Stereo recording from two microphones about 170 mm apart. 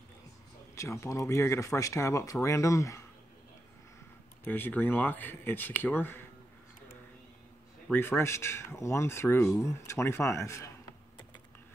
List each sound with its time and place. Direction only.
0.7 s speech: 15° left (ahead or behind)
4.5 s speech: 10° left (ahead or behind)
7.9 s speech: 15° left (ahead or behind)